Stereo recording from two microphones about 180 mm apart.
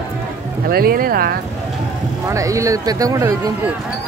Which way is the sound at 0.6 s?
55° right (ahead or behind).